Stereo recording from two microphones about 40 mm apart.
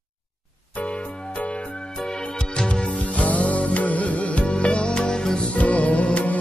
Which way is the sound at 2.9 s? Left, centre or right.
Left.